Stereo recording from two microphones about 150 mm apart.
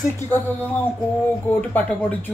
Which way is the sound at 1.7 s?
10° left (ahead or behind).